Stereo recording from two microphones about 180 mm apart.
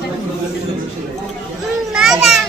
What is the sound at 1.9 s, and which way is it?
Children playing, centre (ahead or behind).